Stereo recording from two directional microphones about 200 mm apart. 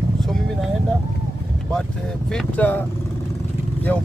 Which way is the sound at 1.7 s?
5° left (ahead or behind).